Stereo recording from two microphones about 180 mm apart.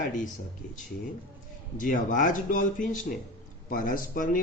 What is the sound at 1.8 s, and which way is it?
Speech, 50° left (ahead or behind).